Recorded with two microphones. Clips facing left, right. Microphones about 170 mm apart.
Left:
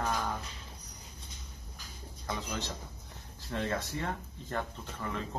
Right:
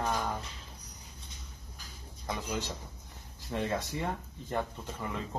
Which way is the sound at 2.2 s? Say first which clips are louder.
Right 2 dB; 15° right (ahead or behind).